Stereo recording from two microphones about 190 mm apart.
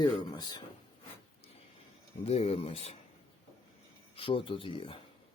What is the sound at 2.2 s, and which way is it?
Speech, 30° left (ahead or behind).